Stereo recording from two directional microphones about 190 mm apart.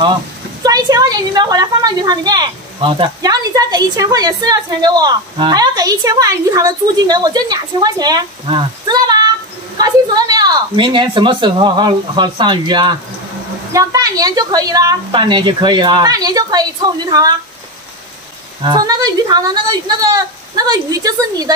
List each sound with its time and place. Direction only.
0.7 s a woman's voice: 20° right (ahead or behind)
18.6 s a woman's voice: 20° right (ahead or behind)